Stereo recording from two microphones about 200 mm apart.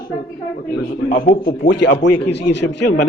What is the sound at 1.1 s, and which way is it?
Speech, 45° left (ahead or behind).